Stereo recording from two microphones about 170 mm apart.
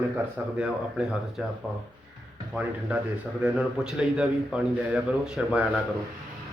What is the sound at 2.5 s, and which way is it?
A man's voice, 5° right (ahead or behind).